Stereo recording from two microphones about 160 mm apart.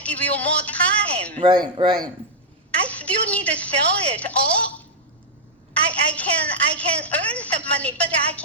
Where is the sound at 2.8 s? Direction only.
10° left (ahead or behind).